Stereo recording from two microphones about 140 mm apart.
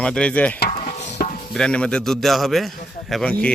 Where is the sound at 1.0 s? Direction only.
55° left (ahead or behind).